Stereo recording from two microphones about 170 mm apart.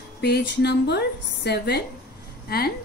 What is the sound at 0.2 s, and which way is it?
A woman's voice, 75° left (ahead or behind).